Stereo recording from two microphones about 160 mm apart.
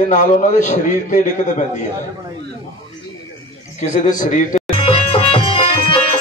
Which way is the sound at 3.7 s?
50° left (ahead or behind).